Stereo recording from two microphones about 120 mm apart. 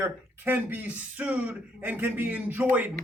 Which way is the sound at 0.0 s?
15° right (ahead or behind).